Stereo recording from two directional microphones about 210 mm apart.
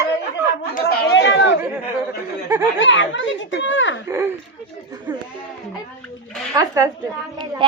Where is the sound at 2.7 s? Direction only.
65° left (ahead or behind).